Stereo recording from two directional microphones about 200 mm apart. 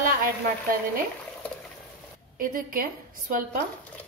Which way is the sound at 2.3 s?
45° right (ahead or behind).